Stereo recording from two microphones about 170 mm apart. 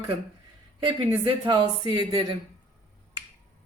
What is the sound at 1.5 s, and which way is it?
Speech, 25° right (ahead or behind).